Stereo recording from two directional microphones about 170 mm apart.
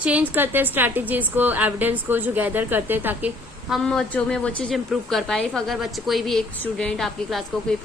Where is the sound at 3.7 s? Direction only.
5° left (ahead or behind).